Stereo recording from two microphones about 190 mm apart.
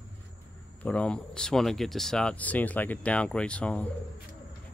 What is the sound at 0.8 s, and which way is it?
Speech, 5° left (ahead or behind).